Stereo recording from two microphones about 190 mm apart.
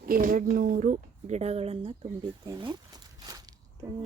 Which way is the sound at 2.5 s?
20° right (ahead or behind).